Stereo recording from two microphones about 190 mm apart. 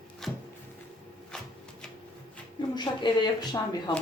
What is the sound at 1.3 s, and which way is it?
Shuffling cards, 5° left (ahead or behind).